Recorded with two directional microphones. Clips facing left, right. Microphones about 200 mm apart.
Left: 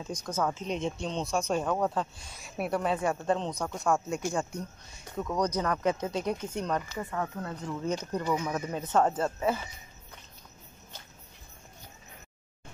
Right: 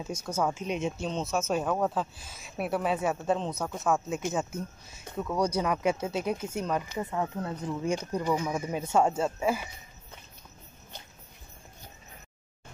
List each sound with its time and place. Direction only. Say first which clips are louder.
0.0 s speech: right 1 dB; 10° right (ahead or behind)
6.9 s speech: right 2 dB; 20° right (ahead or behind)